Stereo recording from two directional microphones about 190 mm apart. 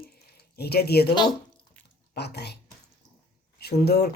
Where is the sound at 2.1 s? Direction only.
60° left (ahead or behind).